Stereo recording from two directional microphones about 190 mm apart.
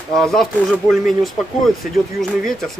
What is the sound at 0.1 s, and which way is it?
Speech, 5° left (ahead or behind).